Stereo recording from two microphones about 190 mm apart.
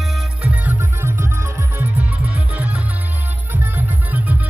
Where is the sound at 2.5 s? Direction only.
10° right (ahead or behind).